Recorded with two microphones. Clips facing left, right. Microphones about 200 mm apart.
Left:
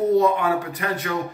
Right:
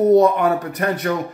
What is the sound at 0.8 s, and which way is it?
Speech, 55° right (ahead or behind).